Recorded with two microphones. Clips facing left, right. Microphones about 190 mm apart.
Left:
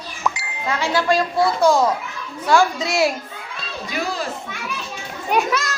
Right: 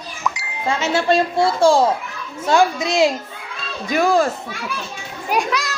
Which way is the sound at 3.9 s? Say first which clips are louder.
Right 10 dB; 50° right (ahead or behind).